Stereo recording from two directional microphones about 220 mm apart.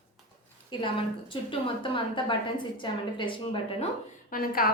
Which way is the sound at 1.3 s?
25° left (ahead or behind).